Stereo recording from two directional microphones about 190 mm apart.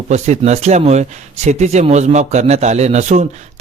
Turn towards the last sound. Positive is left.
turn(degrees=-35)  # may be behind; listen again after turning